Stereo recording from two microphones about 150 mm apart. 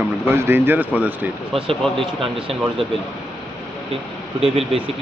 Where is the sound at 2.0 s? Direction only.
35° right (ahead or behind).